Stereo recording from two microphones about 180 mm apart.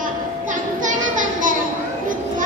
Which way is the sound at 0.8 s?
45° right (ahead or behind).